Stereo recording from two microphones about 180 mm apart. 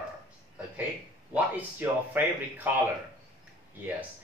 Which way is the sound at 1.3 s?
10° right (ahead or behind).